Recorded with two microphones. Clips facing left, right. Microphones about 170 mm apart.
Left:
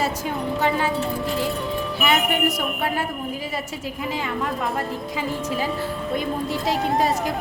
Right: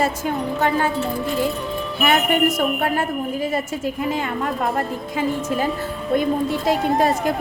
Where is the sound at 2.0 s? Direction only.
50° right (ahead or behind).